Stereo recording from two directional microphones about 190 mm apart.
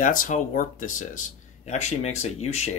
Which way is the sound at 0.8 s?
90° left.